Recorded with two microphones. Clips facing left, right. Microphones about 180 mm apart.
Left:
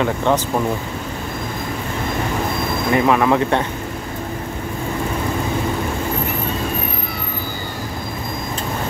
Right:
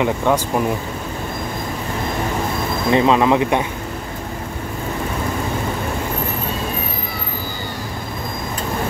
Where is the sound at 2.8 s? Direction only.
20° right (ahead or behind).